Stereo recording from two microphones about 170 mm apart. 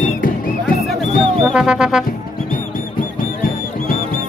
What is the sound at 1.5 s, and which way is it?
Music, 5° right (ahead or behind).